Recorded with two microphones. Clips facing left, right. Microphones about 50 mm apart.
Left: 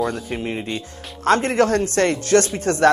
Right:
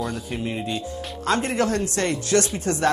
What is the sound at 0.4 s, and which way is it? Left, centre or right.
Speech, left.